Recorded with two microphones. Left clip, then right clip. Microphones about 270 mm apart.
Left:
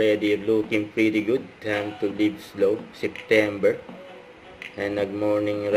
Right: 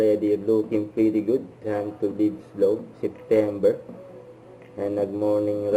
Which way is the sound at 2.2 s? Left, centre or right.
Left.